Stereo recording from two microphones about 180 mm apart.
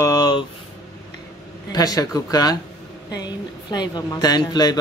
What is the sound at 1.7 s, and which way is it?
A woman's voice, 20° left (ahead or behind).